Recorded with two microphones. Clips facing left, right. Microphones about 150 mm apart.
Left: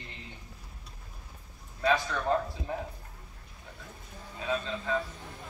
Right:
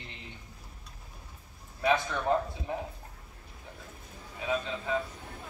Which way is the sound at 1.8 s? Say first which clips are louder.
Even; 15° right (ahead or behind).